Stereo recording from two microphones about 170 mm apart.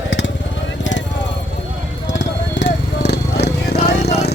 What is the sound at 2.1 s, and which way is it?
Vehicle, 90° left.